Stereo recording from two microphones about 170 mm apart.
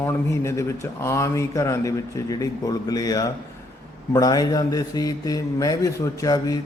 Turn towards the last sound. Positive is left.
turn(degrees=20)  # may be behind; listen again after turning